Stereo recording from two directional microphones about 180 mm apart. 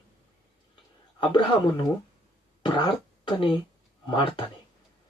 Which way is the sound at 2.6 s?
25° left (ahead or behind).